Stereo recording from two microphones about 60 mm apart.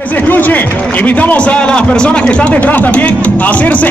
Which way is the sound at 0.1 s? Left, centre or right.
Left.